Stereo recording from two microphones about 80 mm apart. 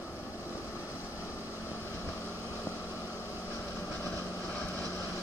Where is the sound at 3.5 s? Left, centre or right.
Left.